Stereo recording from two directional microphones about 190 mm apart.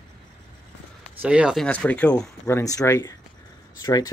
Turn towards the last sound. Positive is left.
turn(degrees=20)  # may be behind; listen again after turning